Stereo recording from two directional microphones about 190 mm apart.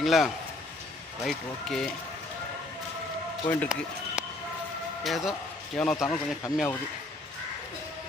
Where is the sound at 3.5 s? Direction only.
10° left (ahead or behind).